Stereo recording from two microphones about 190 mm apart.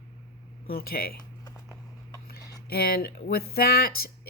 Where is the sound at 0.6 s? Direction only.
50° left (ahead or behind).